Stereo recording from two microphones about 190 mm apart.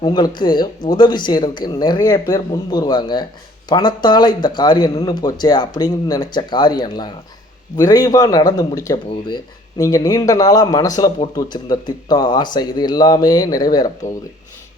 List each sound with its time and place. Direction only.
0.0 s speech: 20° left (ahead or behind)